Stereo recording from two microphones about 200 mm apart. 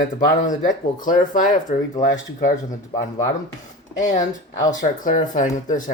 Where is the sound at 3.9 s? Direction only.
40° left (ahead or behind).